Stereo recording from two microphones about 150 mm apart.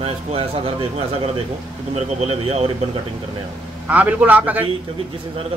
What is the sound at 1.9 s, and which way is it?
Speech, 45° right (ahead or behind).